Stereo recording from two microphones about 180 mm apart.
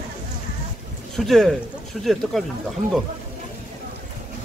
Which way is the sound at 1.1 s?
Centre (ahead or behind).